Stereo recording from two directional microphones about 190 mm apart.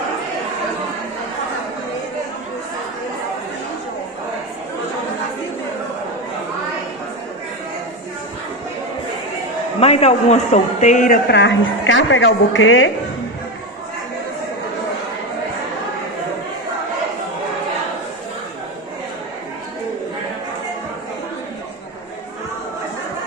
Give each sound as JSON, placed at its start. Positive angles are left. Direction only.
{"t": 9.8, "sound": "speech", "side_deg": 30}